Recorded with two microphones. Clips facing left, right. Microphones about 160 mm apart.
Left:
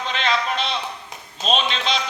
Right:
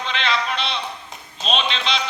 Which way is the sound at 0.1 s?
45° left (ahead or behind).